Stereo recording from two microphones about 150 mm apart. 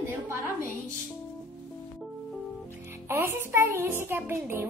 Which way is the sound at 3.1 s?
15° right (ahead or behind).